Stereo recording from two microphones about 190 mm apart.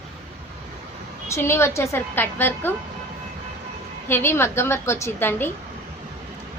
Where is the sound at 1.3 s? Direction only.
15° left (ahead or behind).